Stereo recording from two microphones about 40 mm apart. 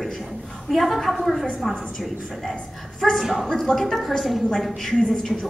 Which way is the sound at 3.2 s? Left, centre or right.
Centre.